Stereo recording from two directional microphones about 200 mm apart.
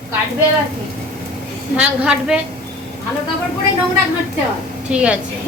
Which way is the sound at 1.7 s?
5° right (ahead or behind).